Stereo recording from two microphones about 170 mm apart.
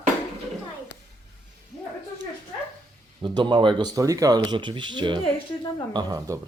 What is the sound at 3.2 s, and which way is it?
Speech, 25° right (ahead or behind).